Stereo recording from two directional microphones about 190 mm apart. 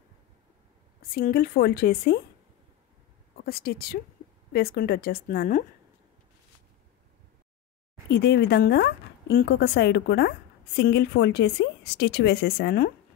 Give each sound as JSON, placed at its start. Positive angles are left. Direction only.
{"t": 1.0, "sound": "a woman's voice", "side_deg": 50}
{"t": 3.4, "sound": "a woman's voice", "side_deg": 55}
{"t": 8.1, "sound": "a woman's voice", "side_deg": 60}